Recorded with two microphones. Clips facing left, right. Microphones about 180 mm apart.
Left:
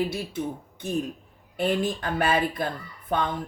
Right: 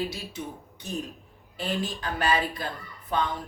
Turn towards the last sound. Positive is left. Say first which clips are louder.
# left 1 dB
turn(degrees=60)  # may be behind; listen again after turning